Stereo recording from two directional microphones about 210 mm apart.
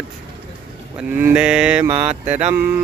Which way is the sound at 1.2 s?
5° right (ahead or behind).